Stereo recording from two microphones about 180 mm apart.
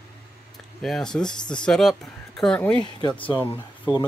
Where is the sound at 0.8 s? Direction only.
5° left (ahead or behind).